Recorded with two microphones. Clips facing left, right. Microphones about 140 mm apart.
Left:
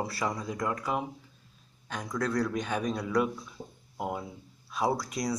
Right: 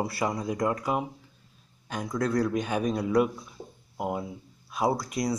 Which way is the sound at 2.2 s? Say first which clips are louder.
Right 3 dB; 10° right (ahead or behind).